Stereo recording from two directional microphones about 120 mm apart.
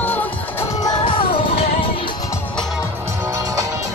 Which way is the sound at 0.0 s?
15° left (ahead or behind).